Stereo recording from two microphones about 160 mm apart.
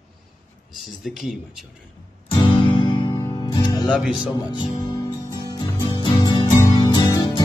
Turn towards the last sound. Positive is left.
turn(degrees=30)  # may be behind; listen again after turning